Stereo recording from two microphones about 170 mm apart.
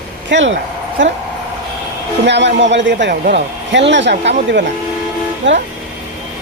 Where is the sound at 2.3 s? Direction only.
90° right.